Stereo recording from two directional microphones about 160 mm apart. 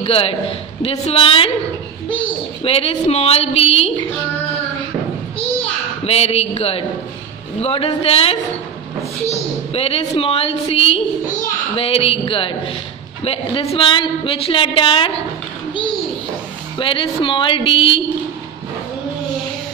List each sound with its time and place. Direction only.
0.0 s a woman's voice: 35° left (ahead or behind)
5.4 s a sound: 40° left (ahead or behind)
7.6 s a woman's voice: 35° left (ahead or behind)
16.7 s a woman's voice: 30° left (ahead or behind)